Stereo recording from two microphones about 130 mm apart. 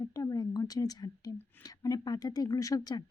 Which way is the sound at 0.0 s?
30° left (ahead or behind).